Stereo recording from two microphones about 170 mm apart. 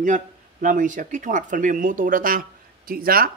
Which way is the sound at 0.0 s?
50° right (ahead or behind).